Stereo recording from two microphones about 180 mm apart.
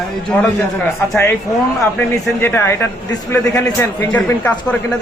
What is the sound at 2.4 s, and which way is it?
A man's voice, 10° left (ahead or behind).